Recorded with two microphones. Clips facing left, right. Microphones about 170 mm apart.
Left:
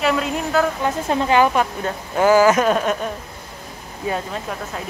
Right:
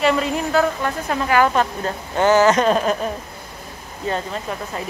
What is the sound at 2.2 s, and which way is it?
Speech, 10° left (ahead or behind).